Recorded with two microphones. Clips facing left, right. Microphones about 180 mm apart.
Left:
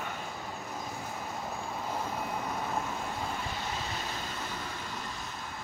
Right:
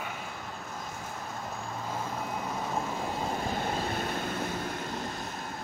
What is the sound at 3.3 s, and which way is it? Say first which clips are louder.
Vehicle: right 5 dB; 45° right (ahead or behind).